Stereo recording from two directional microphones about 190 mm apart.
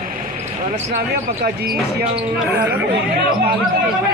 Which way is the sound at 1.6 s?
55° right (ahead or behind).